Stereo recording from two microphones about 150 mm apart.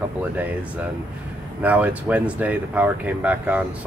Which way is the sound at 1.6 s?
10° right (ahead or behind).